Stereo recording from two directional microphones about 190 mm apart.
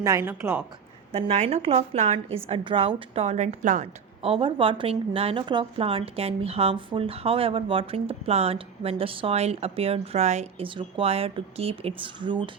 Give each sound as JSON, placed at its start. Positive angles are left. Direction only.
{"t": 0.0, "sound": "a woman's voice", "side_deg": -15}
{"t": 1.1, "sound": "a woman's voice", "side_deg": -35}